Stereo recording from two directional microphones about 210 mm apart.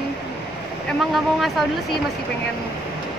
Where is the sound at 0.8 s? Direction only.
Centre (ahead or behind).